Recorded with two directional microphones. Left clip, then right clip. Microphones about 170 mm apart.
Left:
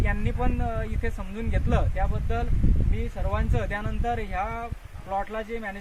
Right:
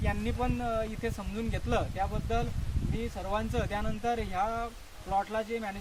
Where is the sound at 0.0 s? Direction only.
5° left (ahead or behind); by 5.7 s 25° left (ahead or behind).